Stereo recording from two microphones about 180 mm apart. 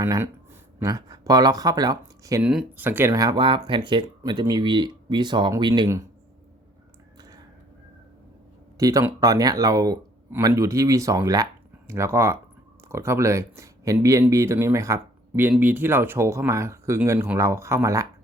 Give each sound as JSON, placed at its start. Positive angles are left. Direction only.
{"t": 0.0, "sound": "speech", "side_deg": -15}
{"t": 2.4, "sound": "speech", "side_deg": -5}
{"t": 8.8, "sound": "speech", "side_deg": -20}